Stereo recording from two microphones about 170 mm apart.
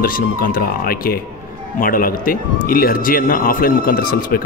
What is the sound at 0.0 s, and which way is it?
Speech, 55° left (ahead or behind).